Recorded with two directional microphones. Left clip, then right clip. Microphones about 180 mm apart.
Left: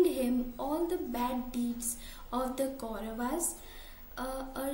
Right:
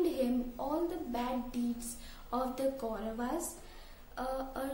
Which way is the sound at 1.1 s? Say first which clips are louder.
Left 2 dB; 15° right (ahead or behind).